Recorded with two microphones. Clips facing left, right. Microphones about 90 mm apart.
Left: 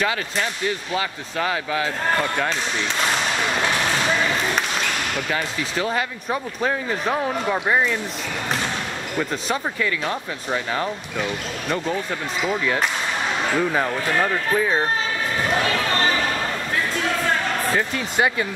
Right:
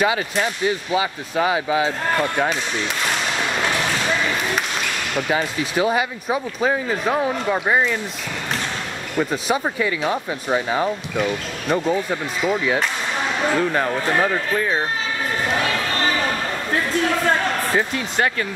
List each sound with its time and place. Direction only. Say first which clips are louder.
0.0 s speech: right 4 dB; 15° right (ahead or behind)
5.1 s speech: right 3 dB; 15° right (ahead or behind)
9.2 s speech: right 4 dB; 10° right (ahead or behind)
18.1 s speech: left 1 dB; 10° left (ahead or behind)